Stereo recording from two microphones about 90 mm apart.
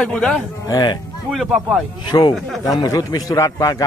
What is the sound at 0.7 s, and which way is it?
Speech, 50° left (ahead or behind).